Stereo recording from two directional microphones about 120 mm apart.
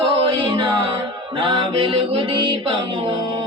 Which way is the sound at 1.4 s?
45° right (ahead or behind).